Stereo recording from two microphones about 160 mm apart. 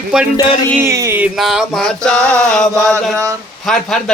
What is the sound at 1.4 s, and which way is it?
A man's voice, centre (ahead or behind).